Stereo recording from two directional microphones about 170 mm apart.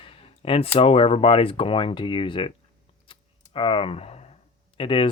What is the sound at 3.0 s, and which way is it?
Typing, 30° left (ahead or behind).